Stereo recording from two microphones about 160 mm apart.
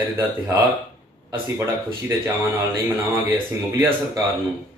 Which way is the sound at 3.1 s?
20° right (ahead or behind).